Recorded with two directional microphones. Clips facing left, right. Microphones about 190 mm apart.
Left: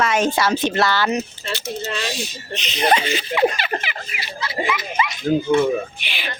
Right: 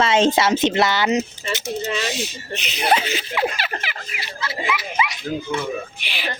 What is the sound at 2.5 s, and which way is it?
Speech, 10° right (ahead or behind).